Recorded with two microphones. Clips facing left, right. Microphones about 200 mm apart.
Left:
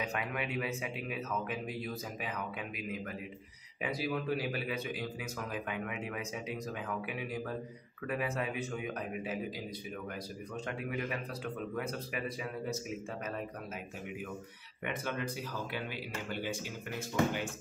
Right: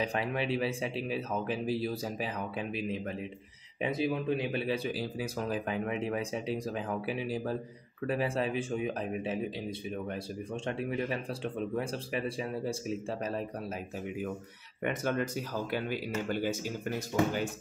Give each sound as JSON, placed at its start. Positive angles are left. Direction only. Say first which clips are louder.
{"t": 0.0, "sound": "speech", "louder": "right 5 dB", "side_deg": -30}
{"t": 14.8, "sound": "a man's voice", "louder": "right 6 dB", "side_deg": -45}
{"t": 16.3, "sound": "a man's voice", "louder": "right 5 dB", "side_deg": -45}